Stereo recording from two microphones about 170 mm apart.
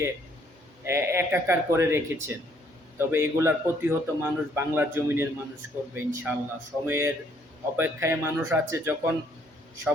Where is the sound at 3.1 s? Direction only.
15° right (ahead or behind).